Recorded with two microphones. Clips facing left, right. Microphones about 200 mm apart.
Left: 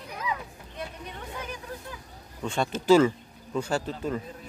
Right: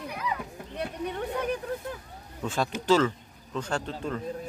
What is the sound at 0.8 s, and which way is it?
Speech, 60° right (ahead or behind).